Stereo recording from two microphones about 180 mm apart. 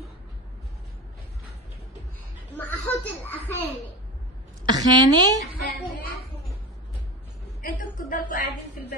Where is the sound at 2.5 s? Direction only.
10° left (ahead or behind).